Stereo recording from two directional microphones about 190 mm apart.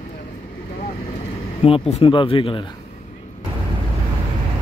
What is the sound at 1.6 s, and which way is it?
Speech, 30° left (ahead or behind).